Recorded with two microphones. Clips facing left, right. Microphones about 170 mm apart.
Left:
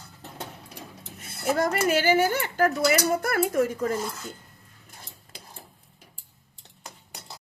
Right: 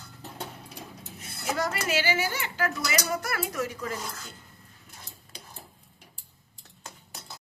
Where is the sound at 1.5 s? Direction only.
50° left (ahead or behind).